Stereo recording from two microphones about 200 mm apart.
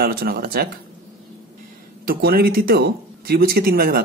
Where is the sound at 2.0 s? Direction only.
50° right (ahead or behind).